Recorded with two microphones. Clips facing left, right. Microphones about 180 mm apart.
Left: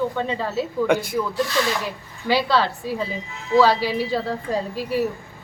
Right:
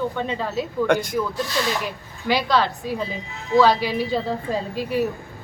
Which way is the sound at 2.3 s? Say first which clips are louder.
Even; 15° right (ahead or behind).